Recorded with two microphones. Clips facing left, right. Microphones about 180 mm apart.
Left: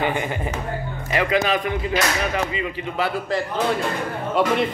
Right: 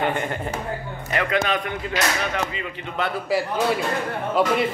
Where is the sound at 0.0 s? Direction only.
Centre (ahead or behind).